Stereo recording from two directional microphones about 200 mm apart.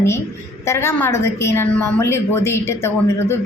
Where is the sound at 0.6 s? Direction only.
10° left (ahead or behind).